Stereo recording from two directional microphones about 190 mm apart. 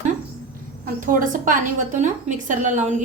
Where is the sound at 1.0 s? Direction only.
45° right (ahead or behind).